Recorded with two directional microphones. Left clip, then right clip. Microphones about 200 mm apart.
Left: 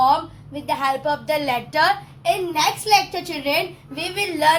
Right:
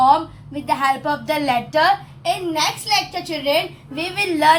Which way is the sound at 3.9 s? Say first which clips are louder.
Right 3 dB; 10° left (ahead or behind).